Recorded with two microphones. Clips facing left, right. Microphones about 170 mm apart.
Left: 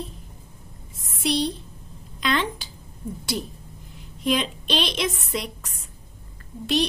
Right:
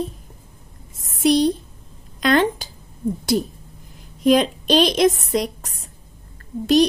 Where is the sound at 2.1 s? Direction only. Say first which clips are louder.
Right 8 dB; 45° right (ahead or behind).